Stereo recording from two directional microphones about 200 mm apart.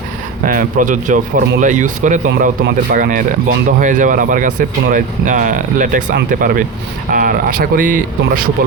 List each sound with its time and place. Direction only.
0.4 s speech: 40° right (ahead or behind)